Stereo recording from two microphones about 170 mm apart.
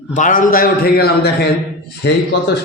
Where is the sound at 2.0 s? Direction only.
90° left.